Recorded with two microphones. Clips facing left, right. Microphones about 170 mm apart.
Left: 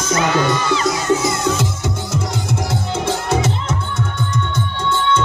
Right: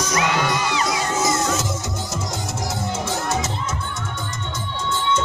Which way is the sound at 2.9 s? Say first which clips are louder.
Left 7 dB; 60° left (ahead or behind).